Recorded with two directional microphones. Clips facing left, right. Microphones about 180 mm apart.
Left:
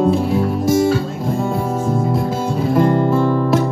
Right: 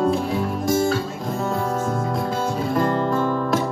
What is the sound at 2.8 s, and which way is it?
Guitar, 15° left (ahead or behind).